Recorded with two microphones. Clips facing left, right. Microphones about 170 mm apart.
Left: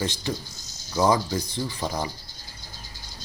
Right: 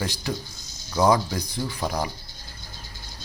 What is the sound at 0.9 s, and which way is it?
Speech, 15° right (ahead or behind).